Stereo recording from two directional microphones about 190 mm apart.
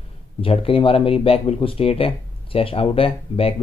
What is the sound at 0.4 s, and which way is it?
Speech, 30° left (ahead or behind).